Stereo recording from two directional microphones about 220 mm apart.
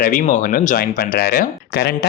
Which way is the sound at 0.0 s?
40° left (ahead or behind).